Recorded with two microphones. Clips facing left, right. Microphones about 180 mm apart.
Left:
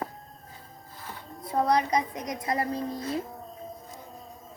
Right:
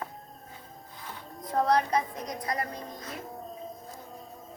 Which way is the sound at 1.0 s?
10° left (ahead or behind).